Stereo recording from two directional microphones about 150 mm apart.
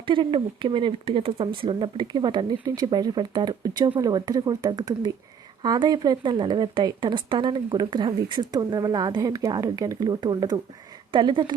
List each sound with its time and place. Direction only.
0.0 s speech: 35° right (ahead or behind)